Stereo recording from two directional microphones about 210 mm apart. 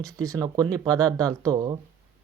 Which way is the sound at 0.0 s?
15° right (ahead or behind).